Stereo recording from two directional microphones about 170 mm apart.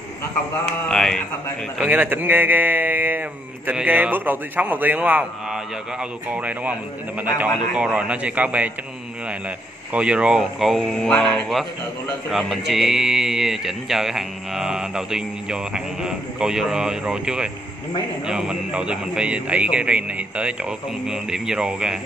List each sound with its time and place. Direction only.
0.8 s speech: 5° left (ahead or behind)
1.8 s speech: 10° right (ahead or behind)
9.9 s speech: 5° right (ahead or behind)